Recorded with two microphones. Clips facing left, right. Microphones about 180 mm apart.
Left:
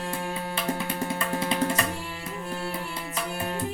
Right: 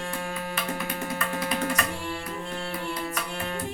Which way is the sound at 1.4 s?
25° left (ahead or behind).